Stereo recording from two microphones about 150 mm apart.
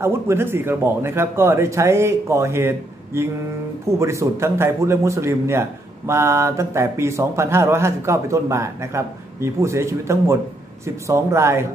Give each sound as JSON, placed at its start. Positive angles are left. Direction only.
{"t": 0.0, "sound": "a man's voice", "side_deg": -15}